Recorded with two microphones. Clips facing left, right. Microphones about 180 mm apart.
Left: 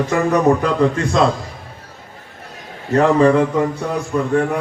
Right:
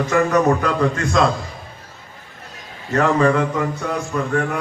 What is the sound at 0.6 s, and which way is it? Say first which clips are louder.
Speech: left 3 dB; 30° left (ahead or behind).